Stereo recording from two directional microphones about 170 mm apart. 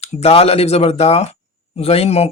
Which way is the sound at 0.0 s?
35° left (ahead or behind).